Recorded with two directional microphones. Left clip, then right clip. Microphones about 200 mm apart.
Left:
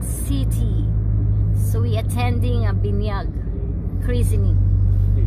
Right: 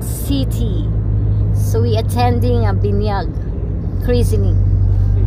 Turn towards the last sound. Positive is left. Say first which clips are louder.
# right 9 dB
turn(degrees=-10)  # may be behind; listen again after turning